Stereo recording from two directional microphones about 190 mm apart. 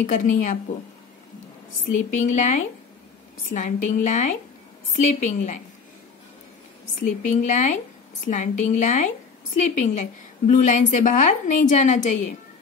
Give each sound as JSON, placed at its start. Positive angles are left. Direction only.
{"t": 0.0, "sound": "a woman's voice", "side_deg": 40}
{"t": 2.1, "sound": "a woman's voice", "side_deg": 40}
{"t": 7.0, "sound": "a woman's voice", "side_deg": 40}